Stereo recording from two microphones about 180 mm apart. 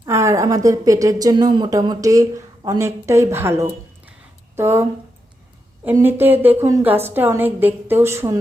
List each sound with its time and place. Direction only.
0.0 s a woman's voice: 15° right (ahead or behind)